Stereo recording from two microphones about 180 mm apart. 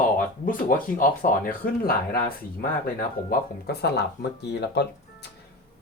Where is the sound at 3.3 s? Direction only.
65° left (ahead or behind).